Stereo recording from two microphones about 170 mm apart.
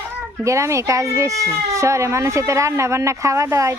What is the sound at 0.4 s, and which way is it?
Speech, 15° right (ahead or behind).